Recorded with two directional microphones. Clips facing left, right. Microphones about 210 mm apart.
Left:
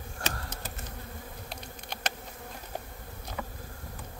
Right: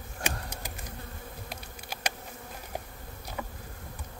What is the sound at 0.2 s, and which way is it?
Insect, 15° right (ahead or behind).